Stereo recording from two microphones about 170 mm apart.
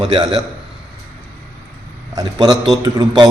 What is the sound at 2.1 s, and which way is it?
A man's voice, 25° right (ahead or behind).